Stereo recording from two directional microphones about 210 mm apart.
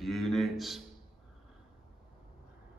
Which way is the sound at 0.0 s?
Centre (ahead or behind).